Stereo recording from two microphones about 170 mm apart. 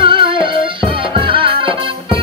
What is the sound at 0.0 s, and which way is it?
Music, 30° right (ahead or behind).